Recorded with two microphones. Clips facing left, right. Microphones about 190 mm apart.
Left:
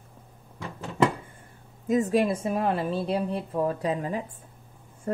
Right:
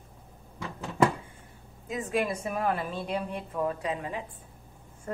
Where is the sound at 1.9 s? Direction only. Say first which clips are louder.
Left 7 dB; 40° left (ahead or behind).